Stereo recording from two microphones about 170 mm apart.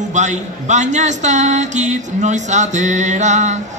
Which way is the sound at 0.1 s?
45° right (ahead or behind).